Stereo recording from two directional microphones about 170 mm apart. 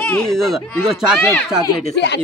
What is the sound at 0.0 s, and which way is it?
Speech, 5° left (ahead or behind).